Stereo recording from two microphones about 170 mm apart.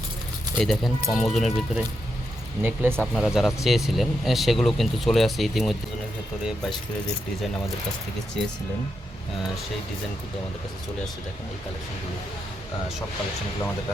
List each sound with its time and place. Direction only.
0.5 s speech: centre (ahead or behind)
2.6 s speech: 10° right (ahead or behind)
3.2 s speech: centre (ahead or behind)
8.4 s speech: 5° left (ahead or behind)